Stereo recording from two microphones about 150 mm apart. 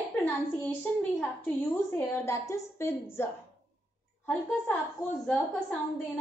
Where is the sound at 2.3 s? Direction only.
20° left (ahead or behind).